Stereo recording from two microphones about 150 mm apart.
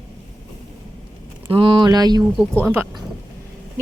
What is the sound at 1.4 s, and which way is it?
Speech, 35° right (ahead or behind).